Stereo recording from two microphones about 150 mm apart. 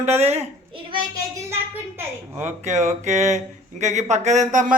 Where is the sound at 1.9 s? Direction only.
10° right (ahead or behind).